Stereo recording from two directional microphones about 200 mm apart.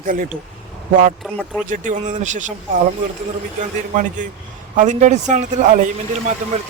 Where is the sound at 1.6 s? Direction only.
40° right (ahead or behind).